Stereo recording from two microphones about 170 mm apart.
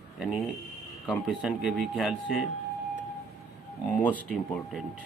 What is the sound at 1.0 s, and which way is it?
Speech, centre (ahead or behind).